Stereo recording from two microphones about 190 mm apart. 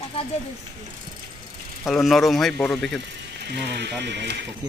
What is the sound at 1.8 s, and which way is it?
Speech, centre (ahead or behind).